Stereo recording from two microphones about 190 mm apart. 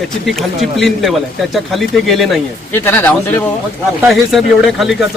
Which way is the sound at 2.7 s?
10° left (ahead or behind).